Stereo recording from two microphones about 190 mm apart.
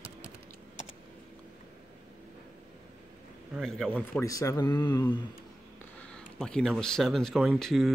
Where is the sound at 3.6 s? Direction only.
Centre (ahead or behind).